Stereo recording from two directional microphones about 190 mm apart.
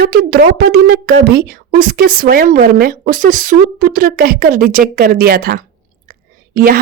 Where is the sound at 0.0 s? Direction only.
55° right (ahead or behind).